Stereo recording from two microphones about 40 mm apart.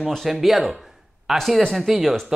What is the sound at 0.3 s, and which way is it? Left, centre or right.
A man's voice, centre.